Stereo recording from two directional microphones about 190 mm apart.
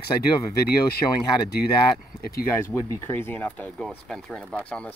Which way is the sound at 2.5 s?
15° left (ahead or behind).